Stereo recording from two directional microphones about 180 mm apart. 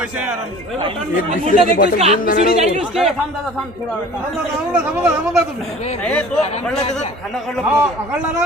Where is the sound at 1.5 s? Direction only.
50° left (ahead or behind).